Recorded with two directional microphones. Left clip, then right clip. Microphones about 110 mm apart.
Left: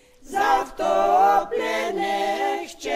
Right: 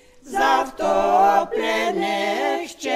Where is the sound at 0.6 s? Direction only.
15° right (ahead or behind).